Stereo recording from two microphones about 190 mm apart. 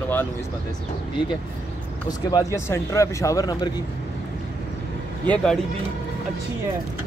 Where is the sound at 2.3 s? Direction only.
20° left (ahead or behind).